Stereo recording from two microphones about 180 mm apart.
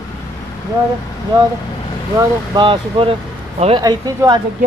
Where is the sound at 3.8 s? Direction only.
20° right (ahead or behind).